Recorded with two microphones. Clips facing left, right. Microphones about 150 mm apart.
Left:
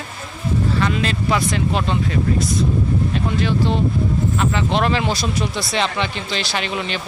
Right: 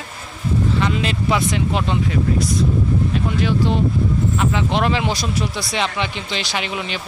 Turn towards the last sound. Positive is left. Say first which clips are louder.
# left 1 dB
turn(degrees=-10)  # may be behind; listen again after turning